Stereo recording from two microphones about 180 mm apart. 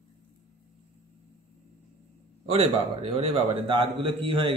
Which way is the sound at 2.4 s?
30° right (ahead or behind).